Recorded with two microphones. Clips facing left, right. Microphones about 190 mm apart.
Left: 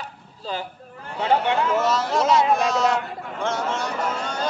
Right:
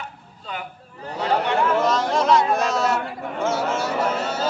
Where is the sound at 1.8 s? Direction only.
5° left (ahead or behind).